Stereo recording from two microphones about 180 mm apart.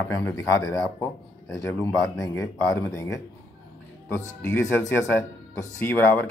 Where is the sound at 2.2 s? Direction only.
15° left (ahead or behind).